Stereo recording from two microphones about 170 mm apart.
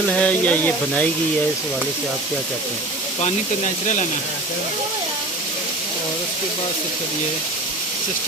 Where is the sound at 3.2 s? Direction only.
40° left (ahead or behind).